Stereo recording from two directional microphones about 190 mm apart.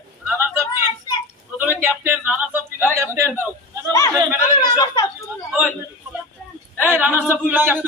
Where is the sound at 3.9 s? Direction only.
15° left (ahead or behind).